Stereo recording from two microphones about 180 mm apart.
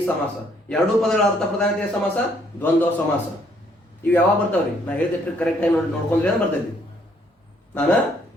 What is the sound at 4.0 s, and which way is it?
A man's voice, 10° left (ahead or behind).